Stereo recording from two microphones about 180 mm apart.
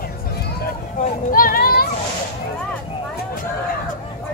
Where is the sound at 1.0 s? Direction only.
50° left (ahead or behind).